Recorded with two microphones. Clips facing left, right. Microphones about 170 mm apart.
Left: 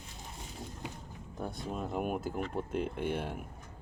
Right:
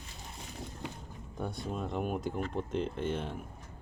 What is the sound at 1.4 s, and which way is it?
Speech, centre (ahead or behind).